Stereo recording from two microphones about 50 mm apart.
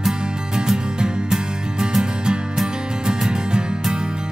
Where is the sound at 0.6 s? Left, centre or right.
Centre.